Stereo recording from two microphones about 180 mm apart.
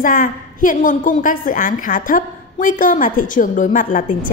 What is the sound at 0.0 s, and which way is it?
A woman's voice, 50° left (ahead or behind).